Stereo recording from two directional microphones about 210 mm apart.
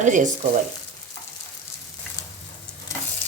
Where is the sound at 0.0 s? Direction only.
35° right (ahead or behind).